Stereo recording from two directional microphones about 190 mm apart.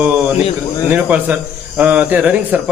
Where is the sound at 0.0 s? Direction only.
10° right (ahead or behind).